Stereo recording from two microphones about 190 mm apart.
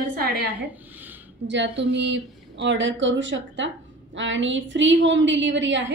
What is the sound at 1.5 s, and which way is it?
A woman's voice, 70° right (ahead or behind).